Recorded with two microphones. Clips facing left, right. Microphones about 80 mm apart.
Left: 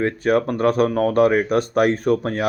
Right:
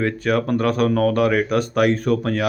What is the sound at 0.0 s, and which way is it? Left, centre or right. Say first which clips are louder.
Speech: left 2 dB; left.